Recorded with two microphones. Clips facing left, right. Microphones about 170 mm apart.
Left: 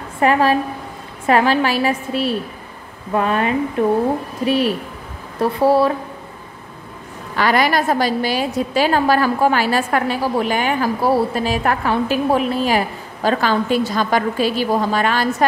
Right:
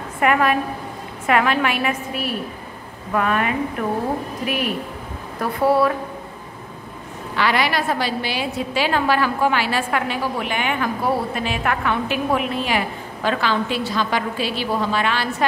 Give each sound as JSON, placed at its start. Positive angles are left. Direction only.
{"t": 0.2, "sound": "a woman's voice", "side_deg": 30}
{"t": 7.3, "sound": "a woman's voice", "side_deg": 45}